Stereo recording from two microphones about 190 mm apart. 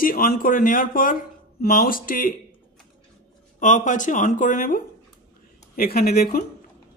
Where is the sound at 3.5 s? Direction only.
40° left (ahead or behind).